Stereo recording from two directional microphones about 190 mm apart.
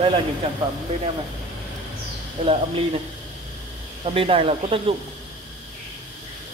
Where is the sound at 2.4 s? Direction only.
35° right (ahead or behind).